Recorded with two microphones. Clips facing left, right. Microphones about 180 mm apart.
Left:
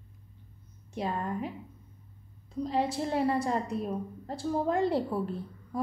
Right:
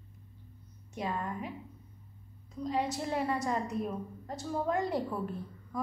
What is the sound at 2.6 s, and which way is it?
A woman's voice, 30° left (ahead or behind).